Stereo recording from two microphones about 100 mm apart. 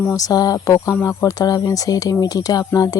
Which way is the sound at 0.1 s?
35° left (ahead or behind).